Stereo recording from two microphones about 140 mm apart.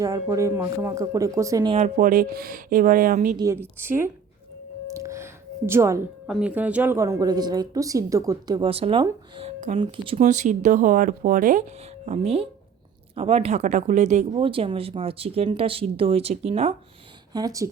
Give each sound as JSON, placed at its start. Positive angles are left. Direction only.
{"t": 0.0, "sound": "speech", "side_deg": -25}
{"t": 2.0, "sound": "speech", "side_deg": -70}
{"t": 3.3, "sound": "a woman's voice", "side_deg": -20}
{"t": 4.9, "sound": "a sound", "side_deg": -20}
{"t": 6.2, "sound": "speech", "side_deg": -5}
{"t": 8.7, "sound": "speech", "side_deg": -40}
{"t": 9.4, "sound": "music", "side_deg": -60}
{"t": 9.7, "sound": "speech", "side_deg": -40}
{"t": 10.2, "sound": "speech", "side_deg": -60}
{"t": 12.0, "sound": "speech", "side_deg": -50}
{"t": 14.3, "sound": "speech", "side_deg": -40}
{"t": 17.3, "sound": "speech", "side_deg": -25}